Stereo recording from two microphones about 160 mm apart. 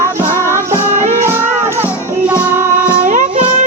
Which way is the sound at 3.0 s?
50° right (ahead or behind).